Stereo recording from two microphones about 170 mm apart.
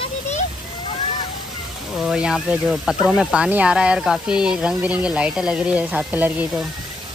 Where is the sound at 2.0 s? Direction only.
5° right (ahead or behind).